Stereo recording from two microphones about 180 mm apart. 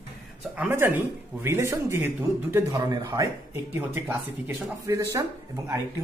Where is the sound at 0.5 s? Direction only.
10° right (ahead or behind).